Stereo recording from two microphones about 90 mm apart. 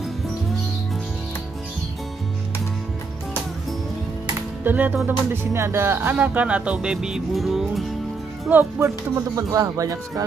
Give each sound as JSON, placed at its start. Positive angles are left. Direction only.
{"t": 4.6, "sound": "speech", "side_deg": -20}
{"t": 6.1, "sound": "speech", "side_deg": -15}
{"t": 8.5, "sound": "speech", "side_deg": -20}
{"t": 8.8, "sound": "speech", "side_deg": -35}